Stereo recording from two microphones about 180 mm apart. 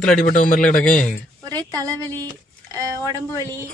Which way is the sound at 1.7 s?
20° right (ahead or behind).